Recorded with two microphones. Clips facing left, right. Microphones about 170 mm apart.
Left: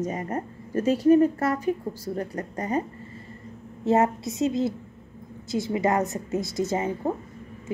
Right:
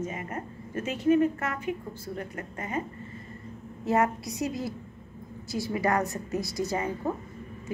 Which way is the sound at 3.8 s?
25° left (ahead or behind).